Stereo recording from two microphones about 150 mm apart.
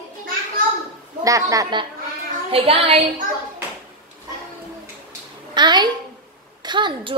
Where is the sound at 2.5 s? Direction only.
40° right (ahead or behind).